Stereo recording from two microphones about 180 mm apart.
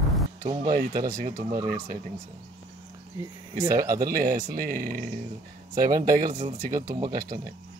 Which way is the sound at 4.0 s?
55° right (ahead or behind).